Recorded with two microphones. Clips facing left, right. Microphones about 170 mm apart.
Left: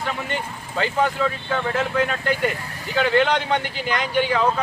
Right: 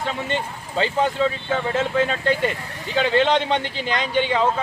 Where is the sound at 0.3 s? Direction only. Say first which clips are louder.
Right 2 dB; 25° right (ahead or behind).